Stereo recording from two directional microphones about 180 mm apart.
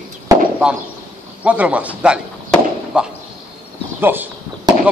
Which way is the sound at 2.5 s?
5° right (ahead or behind).